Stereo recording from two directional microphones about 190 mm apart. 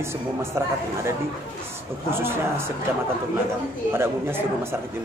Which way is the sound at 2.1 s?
10° right (ahead or behind).